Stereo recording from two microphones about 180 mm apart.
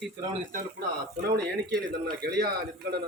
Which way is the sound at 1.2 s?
65° right (ahead or behind).